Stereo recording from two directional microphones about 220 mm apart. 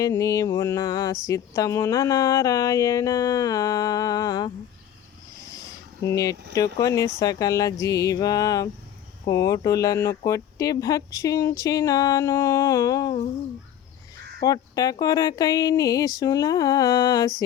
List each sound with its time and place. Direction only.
0.0 s speech: 15° left (ahead or behind)
5.5 s a sound: 15° left (ahead or behind)
6.5 s speech: 15° left (ahead or behind)
14.4 s speech: 15° left (ahead or behind)